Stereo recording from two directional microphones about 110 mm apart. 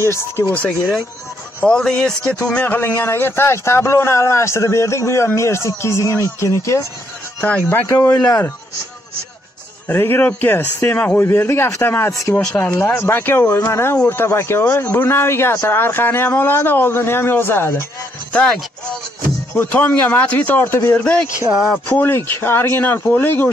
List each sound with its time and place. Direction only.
0.0 s speech: 25° left (ahead or behind)
1.6 s speech: 5° left (ahead or behind); by 6.9 s 25° left (ahead or behind)
7.3 s speech: 15° left (ahead or behind)
7.9 s speech: 25° left (ahead or behind)
9.8 s speech: 20° left (ahead or behind)
12.1 s speech: 30° left (ahead or behind)
12.4 s speech: 15° left (ahead or behind)
19.5 s speech: 15° left (ahead or behind)